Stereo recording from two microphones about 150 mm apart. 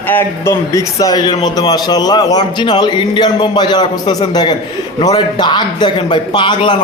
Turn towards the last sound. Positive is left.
turn(degrees=30)  # may be behind; listen again after turning